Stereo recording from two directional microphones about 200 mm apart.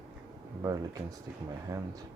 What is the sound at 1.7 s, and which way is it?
Speech, 15° right (ahead or behind).